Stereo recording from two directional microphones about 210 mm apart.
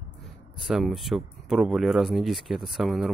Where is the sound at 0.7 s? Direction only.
Centre (ahead or behind).